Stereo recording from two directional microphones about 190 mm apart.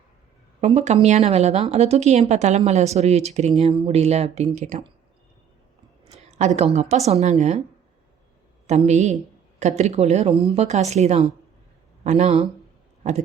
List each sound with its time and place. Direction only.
0.6 s speech: 35° right (ahead or behind)
6.1 s a woman's voice: 35° right (ahead or behind)
8.6 s speech: 35° right (ahead or behind)